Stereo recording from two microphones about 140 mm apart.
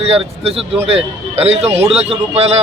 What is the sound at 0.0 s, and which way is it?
A man's voice, 45° right (ahead or behind).